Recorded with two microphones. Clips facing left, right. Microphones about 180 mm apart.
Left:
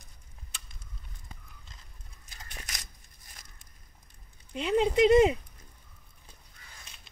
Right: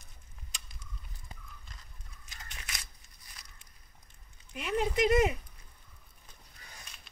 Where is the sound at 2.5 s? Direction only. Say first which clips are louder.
Left 2 dB; 40° left (ahead or behind).